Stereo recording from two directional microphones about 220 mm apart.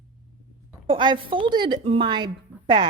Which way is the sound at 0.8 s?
20° right (ahead or behind).